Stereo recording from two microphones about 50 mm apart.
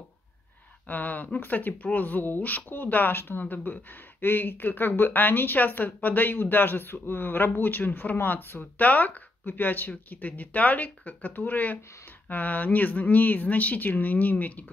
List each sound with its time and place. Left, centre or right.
0.8 s speech: left